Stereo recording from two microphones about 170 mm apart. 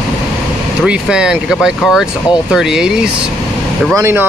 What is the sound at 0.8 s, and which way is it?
Speech, 5° right (ahead or behind).